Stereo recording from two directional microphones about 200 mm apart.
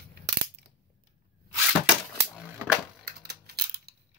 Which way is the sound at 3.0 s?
55° right (ahead or behind).